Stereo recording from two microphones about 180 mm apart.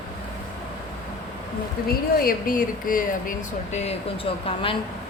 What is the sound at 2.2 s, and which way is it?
Speech, 50° left (ahead or behind).